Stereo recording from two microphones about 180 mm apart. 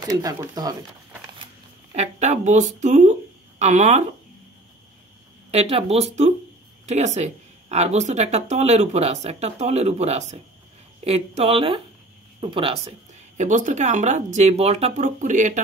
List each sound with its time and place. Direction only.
0.0 s speech: 20° right (ahead or behind)
2.0 s speech: 40° right (ahead or behind)
5.5 s speech: 35° right (ahead or behind)
13.4 s speech: 45° right (ahead or behind)